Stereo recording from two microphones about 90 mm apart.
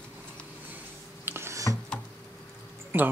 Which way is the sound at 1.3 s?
30° right (ahead or behind).